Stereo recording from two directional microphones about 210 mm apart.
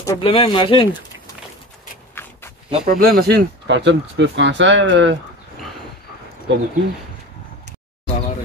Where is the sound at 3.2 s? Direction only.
55° right (ahead or behind).